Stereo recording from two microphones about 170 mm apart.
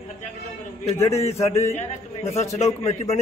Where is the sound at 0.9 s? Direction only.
15° left (ahead or behind).